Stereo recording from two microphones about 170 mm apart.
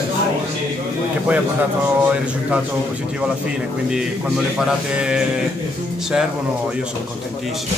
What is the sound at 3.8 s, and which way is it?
A man's voice, 5° right (ahead or behind).